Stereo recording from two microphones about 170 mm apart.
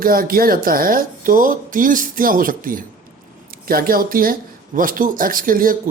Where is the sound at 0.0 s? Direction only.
55° right (ahead or behind).